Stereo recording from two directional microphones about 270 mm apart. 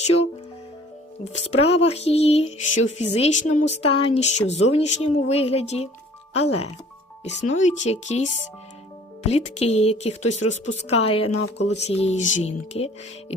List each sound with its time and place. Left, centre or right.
0.0 s music: left
1.2 s speech: left
7.3 s speech: left